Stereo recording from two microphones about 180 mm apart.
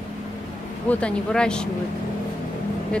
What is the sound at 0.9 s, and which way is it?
Speech, 5° left (ahead or behind).